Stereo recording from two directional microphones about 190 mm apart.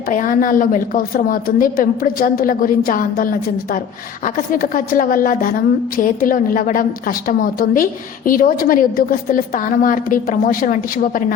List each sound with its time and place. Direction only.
0.1 s a woman's voice: 45° left (ahead or behind)